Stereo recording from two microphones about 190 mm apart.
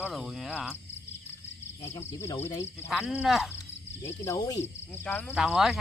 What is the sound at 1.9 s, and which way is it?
Speech, 15° left (ahead or behind).